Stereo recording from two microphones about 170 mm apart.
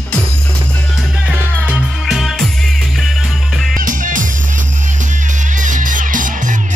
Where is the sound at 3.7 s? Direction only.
50° right (ahead or behind).